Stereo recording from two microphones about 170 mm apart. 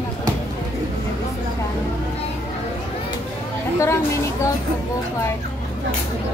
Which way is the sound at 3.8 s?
15° left (ahead or behind).